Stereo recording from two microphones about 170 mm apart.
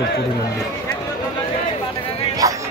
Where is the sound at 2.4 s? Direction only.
20° right (ahead or behind).